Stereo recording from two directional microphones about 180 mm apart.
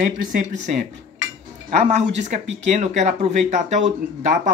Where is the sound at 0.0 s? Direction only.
45° right (ahead or behind).